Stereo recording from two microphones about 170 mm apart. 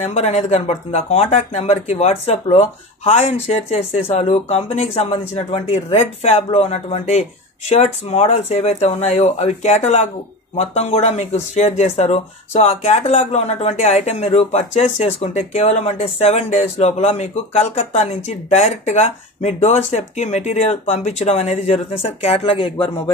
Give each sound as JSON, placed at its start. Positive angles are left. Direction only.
{"t": 0.0, "sound": "speech", "side_deg": 40}